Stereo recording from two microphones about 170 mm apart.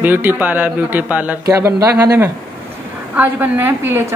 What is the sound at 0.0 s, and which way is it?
Speech, 10° right (ahead or behind).